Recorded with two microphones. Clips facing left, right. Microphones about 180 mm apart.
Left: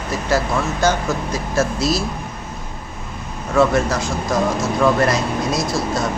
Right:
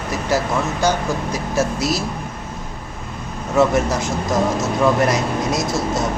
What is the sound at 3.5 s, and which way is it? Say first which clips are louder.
Speech: even; 20° right (ahead or behind).